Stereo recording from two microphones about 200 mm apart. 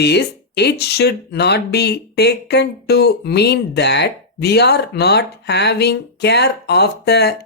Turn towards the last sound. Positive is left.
turn(degrees=55)  # may be behind; listen again after turning